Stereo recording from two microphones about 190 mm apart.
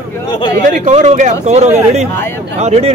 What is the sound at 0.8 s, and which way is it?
Speech, 35° right (ahead or behind).